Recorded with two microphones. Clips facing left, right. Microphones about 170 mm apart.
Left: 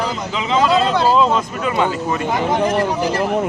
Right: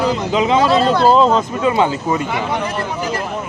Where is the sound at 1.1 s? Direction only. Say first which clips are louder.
Right 3 dB; 30° right (ahead or behind).